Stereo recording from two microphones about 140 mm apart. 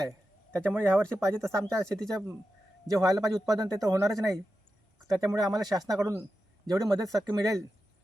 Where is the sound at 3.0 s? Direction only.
25° right (ahead or behind).